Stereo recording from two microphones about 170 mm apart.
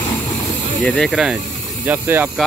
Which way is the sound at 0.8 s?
5° left (ahead or behind).